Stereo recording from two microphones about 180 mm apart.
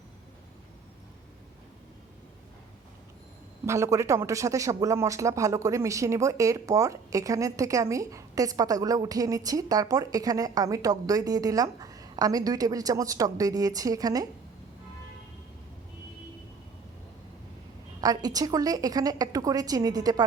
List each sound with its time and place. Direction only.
3.7 s speech: 15° right (ahead or behind)
18.0 s speech: 20° right (ahead or behind)